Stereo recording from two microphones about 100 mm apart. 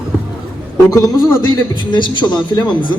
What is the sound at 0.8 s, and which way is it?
Speech, 35° left (ahead or behind).